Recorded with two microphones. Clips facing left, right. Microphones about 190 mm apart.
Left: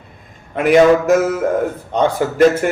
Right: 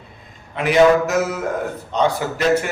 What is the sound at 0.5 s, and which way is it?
Speech, 50° left (ahead or behind).